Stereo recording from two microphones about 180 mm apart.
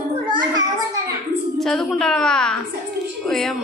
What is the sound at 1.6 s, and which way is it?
A woman's voice, centre (ahead or behind).